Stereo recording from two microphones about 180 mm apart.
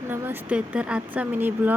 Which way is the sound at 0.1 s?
10° right (ahead or behind).